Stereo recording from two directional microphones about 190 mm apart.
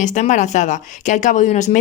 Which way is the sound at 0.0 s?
40° left (ahead or behind).